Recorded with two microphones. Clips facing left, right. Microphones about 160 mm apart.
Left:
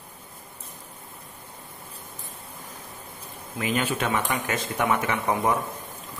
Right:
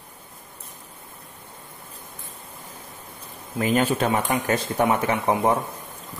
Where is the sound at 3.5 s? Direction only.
35° right (ahead or behind).